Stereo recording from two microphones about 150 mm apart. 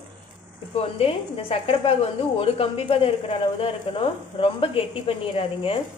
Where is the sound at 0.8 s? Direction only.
40° left (ahead or behind).